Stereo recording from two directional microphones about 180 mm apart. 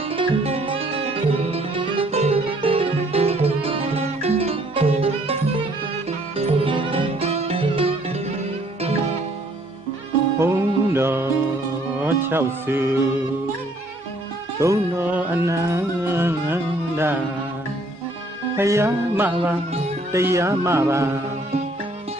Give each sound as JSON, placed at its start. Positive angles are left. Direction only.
{"t": 0.1, "sound": "music", "side_deg": -30}
{"t": 6.3, "sound": "music", "side_deg": -30}
{"t": 10.4, "sound": "music", "side_deg": -15}
{"t": 14.6, "sound": "music", "side_deg": -15}
{"t": 18.6, "sound": "speech", "side_deg": -15}
{"t": 20.1, "sound": "music", "side_deg": -15}